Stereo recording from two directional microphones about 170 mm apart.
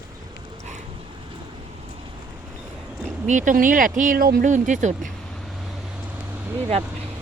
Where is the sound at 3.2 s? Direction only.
50° right (ahead or behind).